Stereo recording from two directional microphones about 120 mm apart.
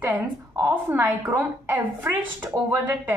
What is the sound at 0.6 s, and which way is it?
Speech, 25° right (ahead or behind).